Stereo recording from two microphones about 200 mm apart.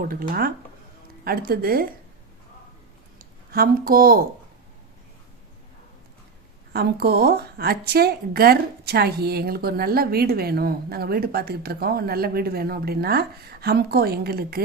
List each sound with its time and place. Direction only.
0.0 s a woman's voice: 45° right (ahead or behind)
3.5 s a woman's voice: 45° right (ahead or behind)
6.7 s a woman's voice: 50° right (ahead or behind)